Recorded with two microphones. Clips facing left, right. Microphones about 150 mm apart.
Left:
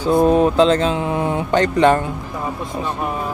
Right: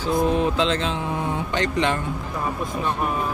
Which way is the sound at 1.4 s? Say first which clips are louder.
Left 10 dB; 45° left (ahead or behind).